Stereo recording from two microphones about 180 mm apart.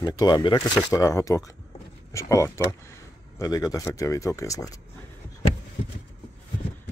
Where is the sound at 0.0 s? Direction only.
25° left (ahead or behind).